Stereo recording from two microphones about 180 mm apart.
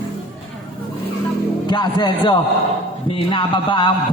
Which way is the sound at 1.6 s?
25° left (ahead or behind).